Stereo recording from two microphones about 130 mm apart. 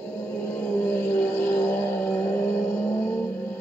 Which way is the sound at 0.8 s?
20° left (ahead or behind).